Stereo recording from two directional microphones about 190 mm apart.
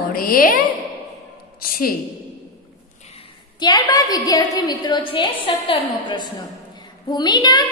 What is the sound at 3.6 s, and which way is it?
A woman's voice, 20° left (ahead or behind).